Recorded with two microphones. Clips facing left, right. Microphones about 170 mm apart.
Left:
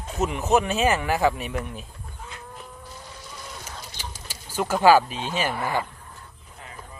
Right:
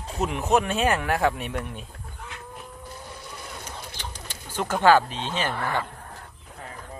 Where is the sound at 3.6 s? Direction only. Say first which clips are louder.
Right 1 dB; 5° left (ahead or behind).